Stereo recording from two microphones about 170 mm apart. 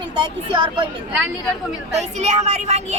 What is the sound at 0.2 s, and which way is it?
Speech, 30° right (ahead or behind).